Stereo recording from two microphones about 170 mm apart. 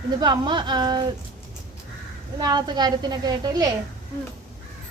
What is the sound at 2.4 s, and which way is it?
A woman's voice, 25° right (ahead or behind).